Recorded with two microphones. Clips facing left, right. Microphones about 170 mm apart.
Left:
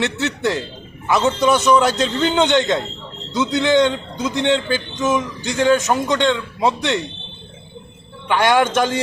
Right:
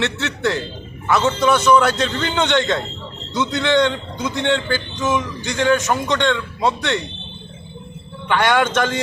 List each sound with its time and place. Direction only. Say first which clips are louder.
0.0 s a man's voice: left 1 dB; 15° left (ahead or behind)
8.3 s a man's voice: left 1 dB; 15° left (ahead or behind)